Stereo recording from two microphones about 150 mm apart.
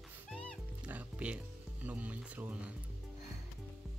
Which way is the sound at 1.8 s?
10° right (ahead or behind).